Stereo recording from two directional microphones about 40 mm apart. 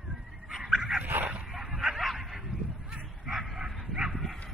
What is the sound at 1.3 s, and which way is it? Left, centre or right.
Dog, centre.